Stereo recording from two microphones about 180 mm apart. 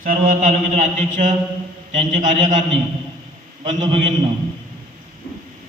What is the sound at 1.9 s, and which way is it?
A man's voice, 40° right (ahead or behind).